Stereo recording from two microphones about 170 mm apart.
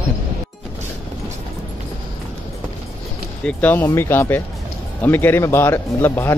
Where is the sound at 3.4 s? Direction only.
10° left (ahead or behind).